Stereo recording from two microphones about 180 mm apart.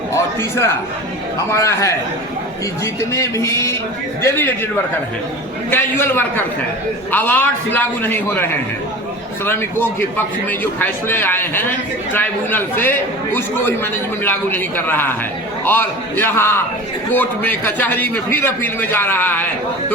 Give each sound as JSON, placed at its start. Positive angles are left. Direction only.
{"t": 0.1, "sound": "a man's voice", "side_deg": 15}
{"t": 5.7, "sound": "a man's voice", "side_deg": 10}